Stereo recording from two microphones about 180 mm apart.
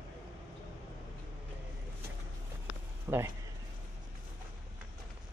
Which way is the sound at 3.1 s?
15° right (ahead or behind).